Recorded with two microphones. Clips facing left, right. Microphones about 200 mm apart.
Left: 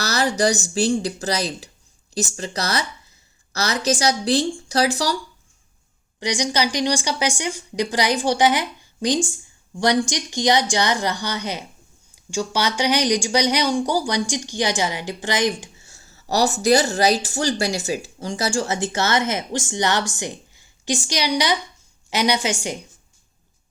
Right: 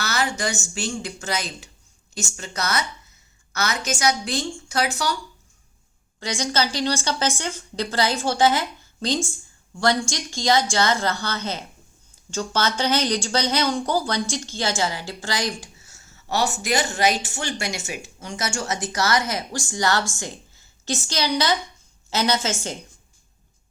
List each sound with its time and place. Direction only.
0.0 s speech: 35° left (ahead or behind)
6.1 s a woman's voice: 15° left (ahead or behind)